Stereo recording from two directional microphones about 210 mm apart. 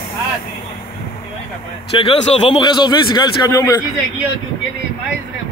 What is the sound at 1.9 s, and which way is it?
A man's voice, 25° left (ahead or behind).